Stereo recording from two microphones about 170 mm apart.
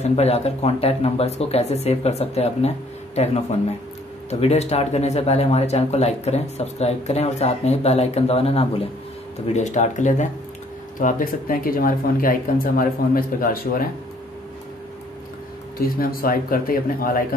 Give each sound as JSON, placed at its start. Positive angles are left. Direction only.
{"t": 0.0, "sound": "speech", "side_deg": 40}
{"t": 16.0, "sound": "speech", "side_deg": 60}